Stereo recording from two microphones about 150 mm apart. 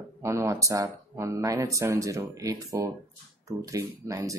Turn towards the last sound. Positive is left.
turn(degrees=-20)  # may be behind; listen again after turning